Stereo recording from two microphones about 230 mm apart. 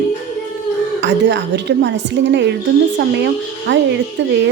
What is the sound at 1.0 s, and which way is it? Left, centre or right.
Speech, right.